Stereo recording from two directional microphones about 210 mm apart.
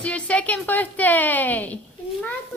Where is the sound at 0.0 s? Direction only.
5° left (ahead or behind).